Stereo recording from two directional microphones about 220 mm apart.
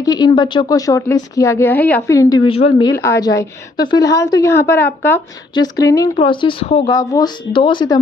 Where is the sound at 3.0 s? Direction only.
15° left (ahead or behind).